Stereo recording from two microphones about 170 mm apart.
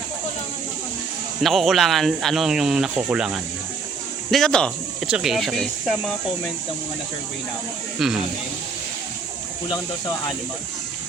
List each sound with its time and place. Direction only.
1.4 s speech: centre (ahead or behind)
7.9 s speech: centre (ahead or behind)
9.6 s speech: 20° left (ahead or behind)